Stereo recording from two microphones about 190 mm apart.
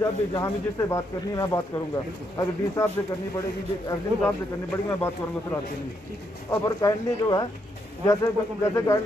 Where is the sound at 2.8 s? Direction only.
15° left (ahead or behind).